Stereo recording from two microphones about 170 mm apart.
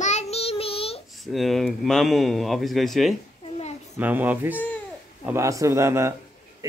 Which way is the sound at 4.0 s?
10° right (ahead or behind).